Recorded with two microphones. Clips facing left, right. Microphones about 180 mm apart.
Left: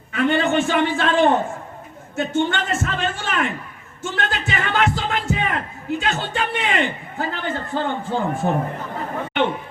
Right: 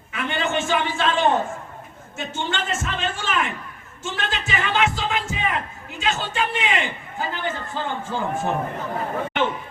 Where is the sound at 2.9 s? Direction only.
55° left (ahead or behind).